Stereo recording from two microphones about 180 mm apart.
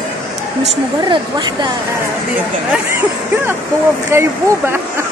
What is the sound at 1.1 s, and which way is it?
Speech, 25° right (ahead or behind).